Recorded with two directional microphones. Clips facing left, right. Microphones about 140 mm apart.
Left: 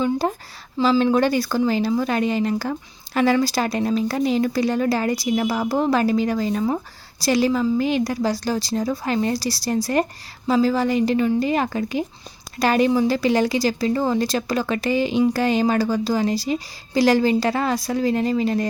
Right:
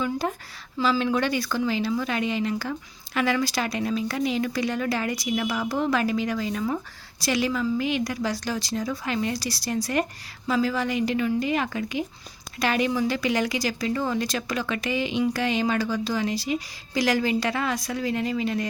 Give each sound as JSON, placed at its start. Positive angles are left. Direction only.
{"t": 0.0, "sound": "speech", "side_deg": 30}